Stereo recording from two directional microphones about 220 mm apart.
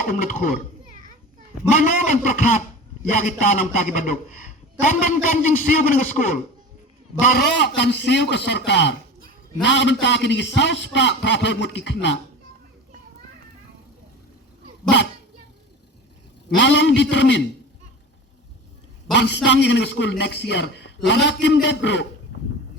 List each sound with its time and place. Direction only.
0.0 s a man's voice: 35° left (ahead or behind)
1.7 s a man's voice: 35° left (ahead or behind); by 12.2 s 55° left (ahead or behind)
16.6 s a man's voice: 55° left (ahead or behind)
19.1 s a man's voice: 50° left (ahead or behind)